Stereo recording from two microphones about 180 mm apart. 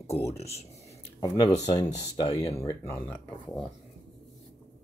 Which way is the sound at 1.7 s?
20° left (ahead or behind).